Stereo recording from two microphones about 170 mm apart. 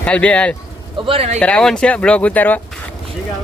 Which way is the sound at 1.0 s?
35° right (ahead or behind).